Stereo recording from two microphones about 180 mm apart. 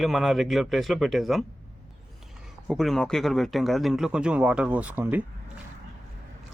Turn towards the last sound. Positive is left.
turn(degrees=-10)  # may be behind; listen again after turning